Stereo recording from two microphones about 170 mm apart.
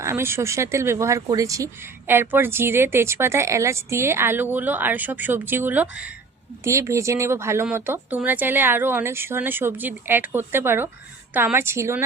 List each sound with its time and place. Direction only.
0.0 s speech: 15° right (ahead or behind)